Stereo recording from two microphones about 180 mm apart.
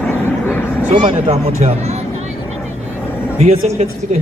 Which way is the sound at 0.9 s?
40° right (ahead or behind).